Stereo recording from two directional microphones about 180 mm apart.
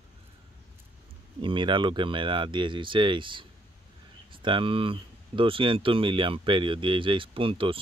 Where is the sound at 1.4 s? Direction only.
25° right (ahead or behind).